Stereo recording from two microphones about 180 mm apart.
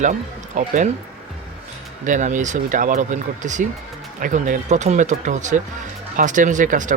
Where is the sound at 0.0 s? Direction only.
45° right (ahead or behind).